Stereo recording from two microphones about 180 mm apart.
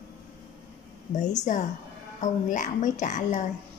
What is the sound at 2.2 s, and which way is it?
A woman's voice, 45° left (ahead or behind).